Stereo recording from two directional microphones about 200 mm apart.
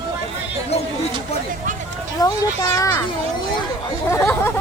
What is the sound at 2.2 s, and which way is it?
Children playing, 20° left (ahead or behind).